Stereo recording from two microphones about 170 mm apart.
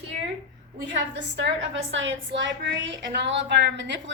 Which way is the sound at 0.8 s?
90° right.